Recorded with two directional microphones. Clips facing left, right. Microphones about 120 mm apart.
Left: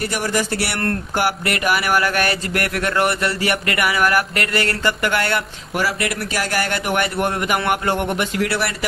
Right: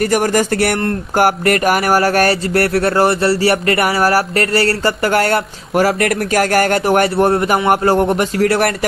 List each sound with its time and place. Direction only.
0.0 s speech: 45° right (ahead or behind)